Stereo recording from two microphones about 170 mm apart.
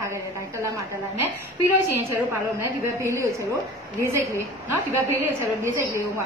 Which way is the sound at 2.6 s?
15° right (ahead or behind).